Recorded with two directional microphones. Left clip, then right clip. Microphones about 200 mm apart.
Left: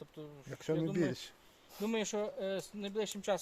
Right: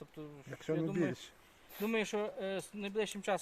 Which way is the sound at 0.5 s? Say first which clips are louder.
Left 1 dB; 50° left (ahead or behind).